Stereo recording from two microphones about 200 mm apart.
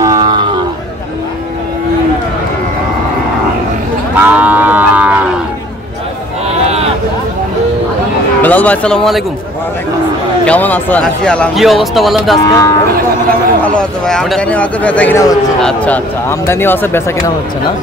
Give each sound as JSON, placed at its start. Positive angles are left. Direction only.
{"t": 0.0, "sound": "cattle", "side_deg": -20}
{"t": 4.1, "sound": "cattle", "side_deg": -10}
{"t": 8.4, "sound": "speech", "side_deg": 10}
{"t": 10.4, "sound": "speech", "side_deg": 10}
{"t": 12.4, "sound": "speech", "side_deg": 15}
{"t": 13.7, "sound": "speech", "side_deg": 5}